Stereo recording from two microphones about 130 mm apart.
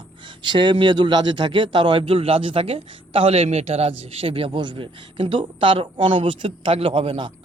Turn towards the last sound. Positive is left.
turn(degrees=-40)  # may be behind; listen again after turning